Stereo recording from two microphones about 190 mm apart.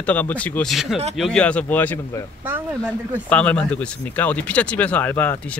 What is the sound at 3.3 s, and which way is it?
Speech, 5° left (ahead or behind).